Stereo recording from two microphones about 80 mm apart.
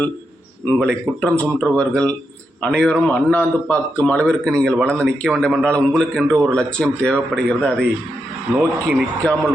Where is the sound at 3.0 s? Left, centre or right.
Left.